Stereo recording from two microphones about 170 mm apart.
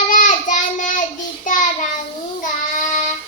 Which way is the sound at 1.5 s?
50° left (ahead or behind).